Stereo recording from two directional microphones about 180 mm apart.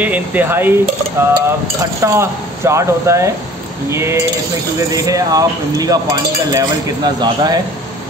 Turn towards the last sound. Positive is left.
turn(degrees=-20)  # may be behind; listen again after turning